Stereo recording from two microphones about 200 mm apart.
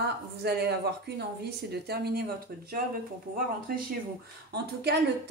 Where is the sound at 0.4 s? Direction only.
55° right (ahead or behind).